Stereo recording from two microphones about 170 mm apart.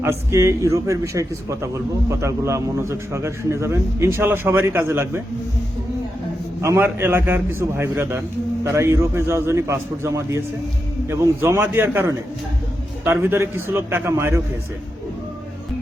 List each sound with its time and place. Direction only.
0.0 s a man's voice: 15° right (ahead or behind)
6.6 s a man's voice: 15° right (ahead or behind)